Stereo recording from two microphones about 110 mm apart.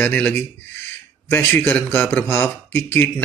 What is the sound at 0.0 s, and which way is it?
Speech, 15° left (ahead or behind).